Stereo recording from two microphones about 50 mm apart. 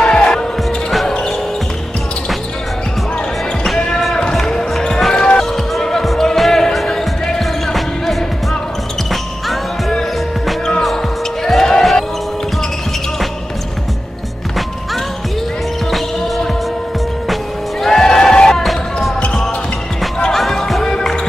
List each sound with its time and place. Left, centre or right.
0.0 s music: centre
3.6 s basketball bounce: centre
17.8 s music: centre
18.6 s basketball bounce: centre
20.2 s basketball bounce: centre
20.9 s music: centre